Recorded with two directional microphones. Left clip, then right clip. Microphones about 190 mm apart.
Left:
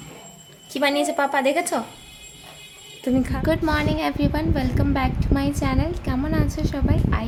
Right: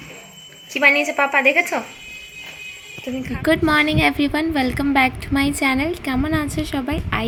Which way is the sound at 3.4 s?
15° right (ahead or behind).